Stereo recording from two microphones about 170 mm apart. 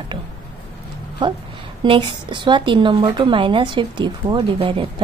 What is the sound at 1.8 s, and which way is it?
A woman's voice, 30° right (ahead or behind).